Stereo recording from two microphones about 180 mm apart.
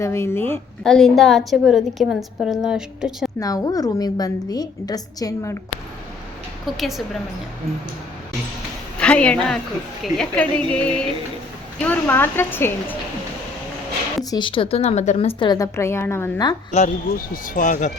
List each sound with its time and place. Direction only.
0.0 s a woman's voice: 15° left (ahead or behind); by 3.3 s 5° right (ahead or behind)
3.4 s a woman's voice: 20° left (ahead or behind)
6.7 s a woman's voice: centre (ahead or behind)
9.0 s a woman's voice: 5° left (ahead or behind)
14.3 s a woman's voice: 25° left (ahead or behind)
16.7 s speech: 45° left (ahead or behind)